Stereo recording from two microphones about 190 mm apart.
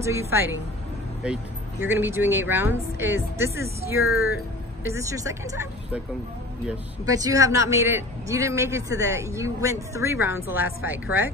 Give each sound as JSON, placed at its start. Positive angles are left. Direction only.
{"t": 0.0, "sound": "speech", "side_deg": -15}
{"t": 4.0, "sound": "speech", "side_deg": 90}
{"t": 4.8, "sound": "speech", "side_deg": -15}
{"t": 7.1, "sound": "speech", "side_deg": -15}